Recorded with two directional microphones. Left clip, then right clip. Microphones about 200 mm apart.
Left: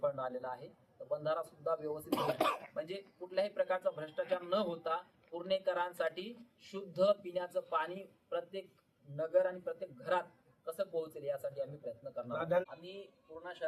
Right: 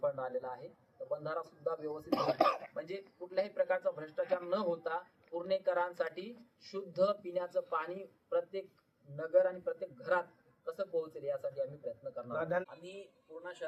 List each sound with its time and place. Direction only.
0.0 s a man's voice: 5° left (ahead or behind)
1.8 s speech: 15° left (ahead or behind)
2.0 s speech: 40° right (ahead or behind)
2.7 s a man's voice: 5° left (ahead or behind)
12.3 s speech: 10° right (ahead or behind)
12.8 s a man's voice: 5° left (ahead or behind)